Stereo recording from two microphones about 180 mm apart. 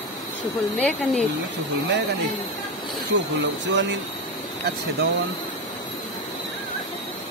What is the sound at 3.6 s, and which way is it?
Speech, 80° right.